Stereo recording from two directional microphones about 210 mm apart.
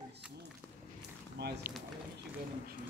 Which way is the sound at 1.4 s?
50° right (ahead or behind).